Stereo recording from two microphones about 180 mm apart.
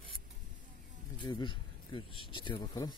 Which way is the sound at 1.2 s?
25° left (ahead or behind).